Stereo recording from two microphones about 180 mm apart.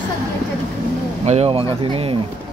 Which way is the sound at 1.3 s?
35° right (ahead or behind).